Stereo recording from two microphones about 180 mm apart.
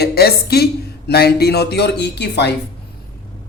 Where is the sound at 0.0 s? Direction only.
60° left (ahead or behind).